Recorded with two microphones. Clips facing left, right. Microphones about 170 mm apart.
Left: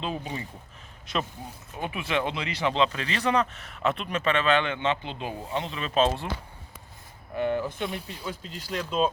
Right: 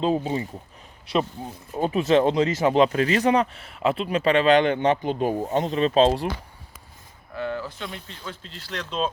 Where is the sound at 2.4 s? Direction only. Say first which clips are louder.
Right 7 dB; 40° right (ahead or behind).